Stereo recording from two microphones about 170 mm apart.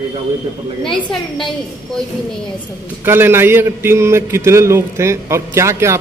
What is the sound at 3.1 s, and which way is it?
A man's voice, 15° right (ahead or behind).